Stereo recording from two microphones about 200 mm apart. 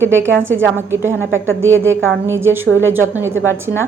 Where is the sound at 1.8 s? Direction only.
10° right (ahead or behind).